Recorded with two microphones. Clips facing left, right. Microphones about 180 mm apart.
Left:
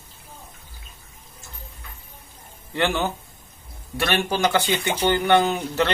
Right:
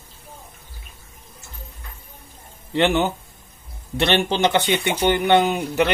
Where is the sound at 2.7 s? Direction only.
20° right (ahead or behind).